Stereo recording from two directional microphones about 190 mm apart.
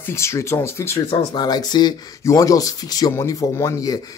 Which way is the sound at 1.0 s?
25° left (ahead or behind).